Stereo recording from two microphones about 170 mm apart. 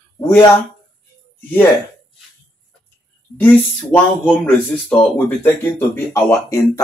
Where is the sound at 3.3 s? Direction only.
10° left (ahead or behind).